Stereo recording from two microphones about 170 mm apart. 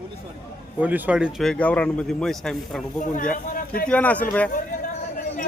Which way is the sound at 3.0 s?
50° left (ahead or behind).